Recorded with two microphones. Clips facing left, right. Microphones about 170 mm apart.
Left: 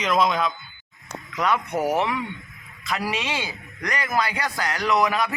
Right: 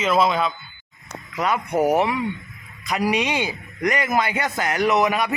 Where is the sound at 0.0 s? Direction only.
5° right (ahead or behind).